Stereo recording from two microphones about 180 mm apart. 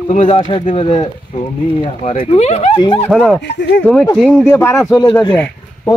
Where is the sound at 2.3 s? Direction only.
35° left (ahead or behind).